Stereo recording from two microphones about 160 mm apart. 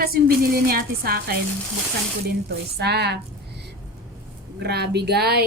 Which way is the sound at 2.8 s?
90° right.